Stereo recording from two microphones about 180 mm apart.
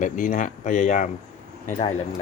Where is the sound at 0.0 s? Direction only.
45° left (ahead or behind).